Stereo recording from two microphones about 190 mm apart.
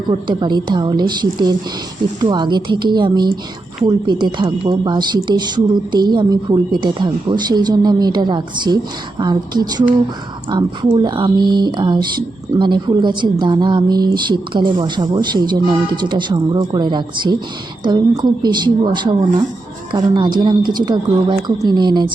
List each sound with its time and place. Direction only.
0.1 s speech: 25° right (ahead or behind)